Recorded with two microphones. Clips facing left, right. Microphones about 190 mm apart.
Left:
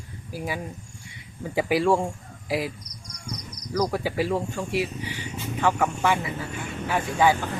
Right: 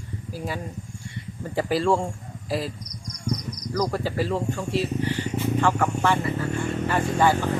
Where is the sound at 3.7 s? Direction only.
10° left (ahead or behind).